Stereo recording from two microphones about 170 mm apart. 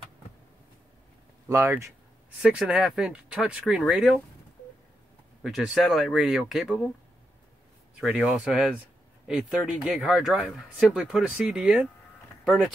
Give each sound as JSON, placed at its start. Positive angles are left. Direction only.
{"t": 1.5, "sound": "speech", "side_deg": -15}
{"t": 2.4, "sound": "speech", "side_deg": -5}
{"t": 5.4, "sound": "speech", "side_deg": 0}
{"t": 8.0, "sound": "speech", "side_deg": -5}